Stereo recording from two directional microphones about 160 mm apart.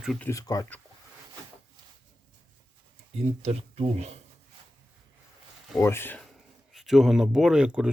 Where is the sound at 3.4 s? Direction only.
40° right (ahead or behind).